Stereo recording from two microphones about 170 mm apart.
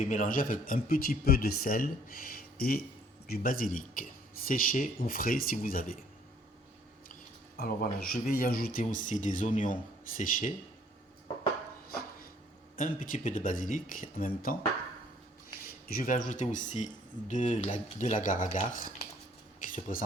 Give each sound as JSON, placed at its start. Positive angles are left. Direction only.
{"t": 0.0, "sound": "speech", "side_deg": 50}
{"t": 7.5, "sound": "speech", "side_deg": 65}
{"t": 12.7, "sound": "speech", "side_deg": 55}
{"t": 15.9, "sound": "speech", "side_deg": 55}
{"t": 19.6, "sound": "a sound", "side_deg": 50}